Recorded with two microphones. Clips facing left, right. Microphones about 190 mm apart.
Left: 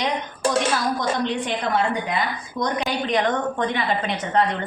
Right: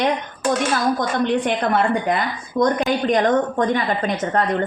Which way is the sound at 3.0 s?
45° right (ahead or behind).